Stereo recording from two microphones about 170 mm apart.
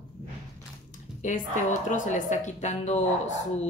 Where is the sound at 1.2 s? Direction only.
50° left (ahead or behind).